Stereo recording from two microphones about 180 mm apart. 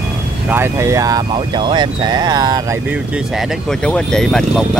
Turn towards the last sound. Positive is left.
turn(degrees=0)  # may be behind; listen again after turning